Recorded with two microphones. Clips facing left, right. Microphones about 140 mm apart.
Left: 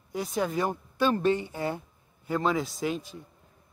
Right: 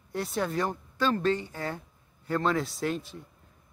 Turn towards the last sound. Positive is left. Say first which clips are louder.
# even
turn(degrees=0)  # may be behind; listen again after turning